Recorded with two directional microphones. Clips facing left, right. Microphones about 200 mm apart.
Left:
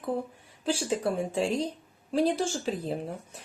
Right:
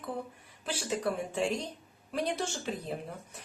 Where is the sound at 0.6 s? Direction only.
30° left (ahead or behind).